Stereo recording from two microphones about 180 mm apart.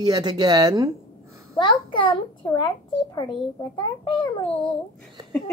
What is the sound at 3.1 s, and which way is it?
A child's voice, 25° left (ahead or behind).